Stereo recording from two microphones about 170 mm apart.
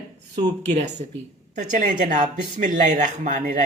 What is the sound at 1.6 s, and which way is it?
Speech, 50° right (ahead or behind).